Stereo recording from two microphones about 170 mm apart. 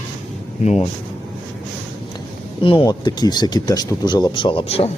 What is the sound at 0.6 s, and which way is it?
Speech, 40° left (ahead or behind).